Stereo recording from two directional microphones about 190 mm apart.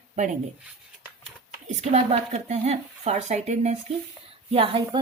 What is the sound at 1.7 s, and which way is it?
A woman's voice, 35° right (ahead or behind).